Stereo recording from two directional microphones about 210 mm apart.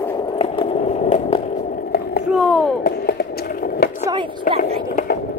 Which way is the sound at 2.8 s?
45° left (ahead or behind).